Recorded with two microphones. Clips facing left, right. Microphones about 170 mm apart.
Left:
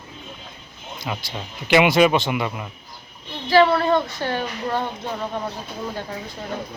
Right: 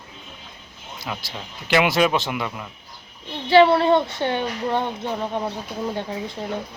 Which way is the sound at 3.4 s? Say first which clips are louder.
Right 2 dB; 25° right (ahead or behind).